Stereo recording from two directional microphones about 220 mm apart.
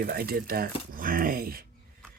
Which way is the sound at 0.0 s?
45° right (ahead or behind).